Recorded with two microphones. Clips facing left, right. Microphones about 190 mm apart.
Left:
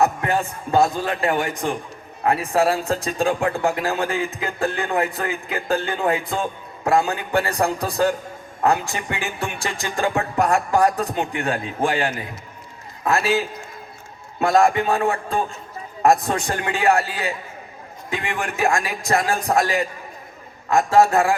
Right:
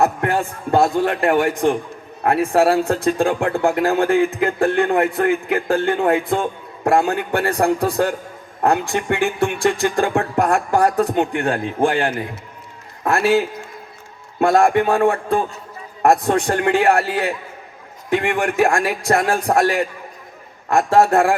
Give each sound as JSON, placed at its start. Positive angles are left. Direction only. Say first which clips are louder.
{"t": 0.0, "sound": "speech", "louder": "right 2 dB", "side_deg": -60}